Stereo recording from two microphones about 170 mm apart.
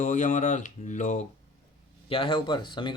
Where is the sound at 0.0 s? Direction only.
50° left (ahead or behind).